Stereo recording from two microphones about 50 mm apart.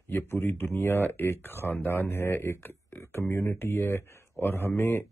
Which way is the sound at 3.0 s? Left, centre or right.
Left.